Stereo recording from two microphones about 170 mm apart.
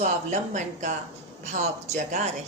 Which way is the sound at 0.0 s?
45° right (ahead or behind).